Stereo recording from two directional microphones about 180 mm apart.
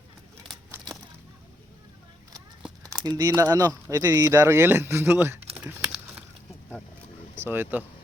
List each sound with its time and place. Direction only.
2.8 s speech: 20° right (ahead or behind)
5.5 s crumpling: 5° right (ahead or behind)
7.3 s speech: 10° right (ahead or behind)